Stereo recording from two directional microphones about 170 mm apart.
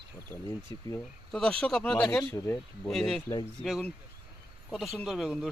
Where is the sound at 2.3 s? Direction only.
15° left (ahead or behind).